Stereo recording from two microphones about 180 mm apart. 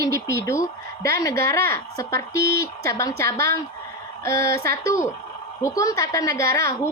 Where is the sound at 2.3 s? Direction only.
60° right (ahead or behind).